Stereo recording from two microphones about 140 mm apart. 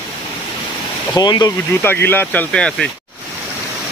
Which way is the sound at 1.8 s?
15° left (ahead or behind).